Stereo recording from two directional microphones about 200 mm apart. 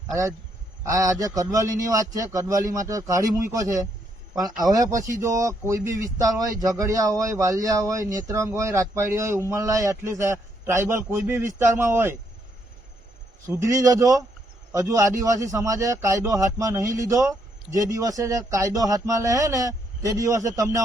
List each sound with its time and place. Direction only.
0.9 s a man's voice: 15° right (ahead or behind)
13.5 s a man's voice: 15° right (ahead or behind)